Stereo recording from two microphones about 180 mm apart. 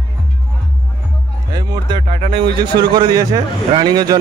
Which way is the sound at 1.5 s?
25° right (ahead or behind).